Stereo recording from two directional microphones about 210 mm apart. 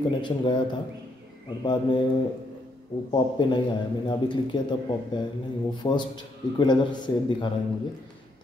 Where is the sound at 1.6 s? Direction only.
20° left (ahead or behind).